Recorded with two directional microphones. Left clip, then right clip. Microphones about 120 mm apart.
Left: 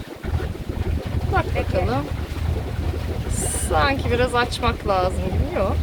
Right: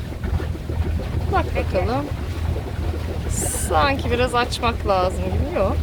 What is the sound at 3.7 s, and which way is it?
Speech, 15° right (ahead or behind).